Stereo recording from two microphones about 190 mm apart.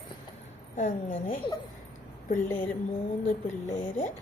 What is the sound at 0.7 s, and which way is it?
Speech, 40° left (ahead or behind).